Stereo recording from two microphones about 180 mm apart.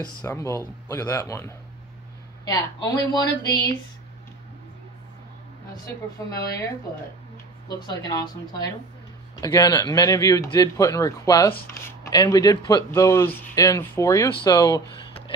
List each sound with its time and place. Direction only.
0.2 s speech: 15° left (ahead or behind)
6.2 s speech: 20° left (ahead or behind)
7.8 s speech: 25° left (ahead or behind)